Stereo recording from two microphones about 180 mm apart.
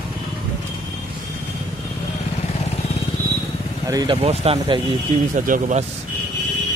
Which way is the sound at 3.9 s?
25° right (ahead or behind).